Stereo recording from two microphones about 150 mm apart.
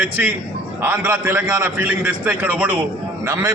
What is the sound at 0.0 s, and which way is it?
A man's voice, 10° right (ahead or behind).